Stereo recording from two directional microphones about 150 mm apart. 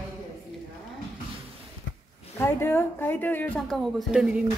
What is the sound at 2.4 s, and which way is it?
A woman's voice, 15° left (ahead or behind).